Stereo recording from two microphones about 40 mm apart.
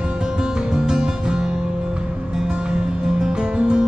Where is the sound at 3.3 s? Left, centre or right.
Right.